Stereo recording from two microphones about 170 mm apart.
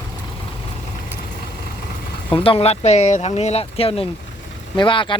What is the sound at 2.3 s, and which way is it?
Speech, 35° left (ahead or behind).